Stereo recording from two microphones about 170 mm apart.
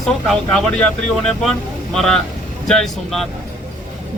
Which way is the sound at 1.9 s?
5° left (ahead or behind).